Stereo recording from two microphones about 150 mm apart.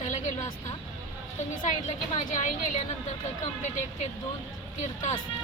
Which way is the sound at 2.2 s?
55° left (ahead or behind).